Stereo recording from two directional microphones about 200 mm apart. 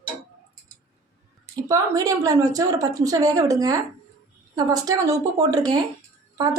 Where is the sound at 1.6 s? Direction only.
15° right (ahead or behind).